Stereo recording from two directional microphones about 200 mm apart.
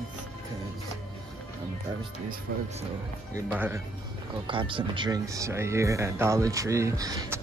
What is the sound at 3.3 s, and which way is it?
Speech, 10° right (ahead or behind).